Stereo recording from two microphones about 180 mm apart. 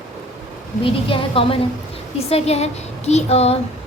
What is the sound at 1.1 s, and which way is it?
A woman's voice, 30° left (ahead or behind).